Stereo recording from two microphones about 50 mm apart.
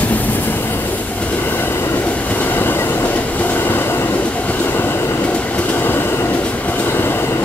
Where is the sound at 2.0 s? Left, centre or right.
Left.